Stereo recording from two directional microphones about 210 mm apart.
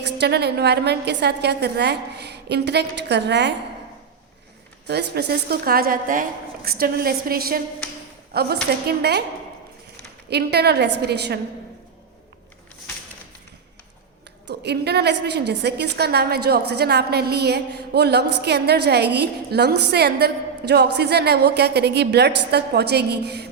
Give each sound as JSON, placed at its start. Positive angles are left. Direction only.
{"t": 0.0, "sound": "a woman's voice", "side_deg": -50}
{"t": 4.9, "sound": "a woman's voice", "side_deg": -50}
{"t": 10.2, "sound": "a woman's voice", "side_deg": -50}
{"t": 14.4, "sound": "a woman's voice", "side_deg": -50}